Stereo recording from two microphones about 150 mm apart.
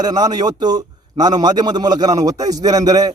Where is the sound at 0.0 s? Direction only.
25° right (ahead or behind).